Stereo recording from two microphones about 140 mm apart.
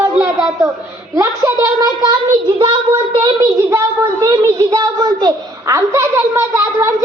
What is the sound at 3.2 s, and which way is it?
A child's voice, 20° right (ahead or behind).